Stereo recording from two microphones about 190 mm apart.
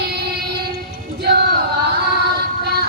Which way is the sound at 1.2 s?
55° right (ahead or behind).